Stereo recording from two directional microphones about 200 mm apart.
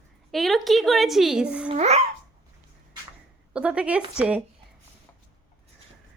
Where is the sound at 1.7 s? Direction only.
35° right (ahead or behind).